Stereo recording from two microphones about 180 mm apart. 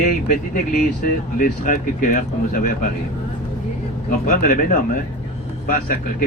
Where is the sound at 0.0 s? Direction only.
50° left (ahead or behind).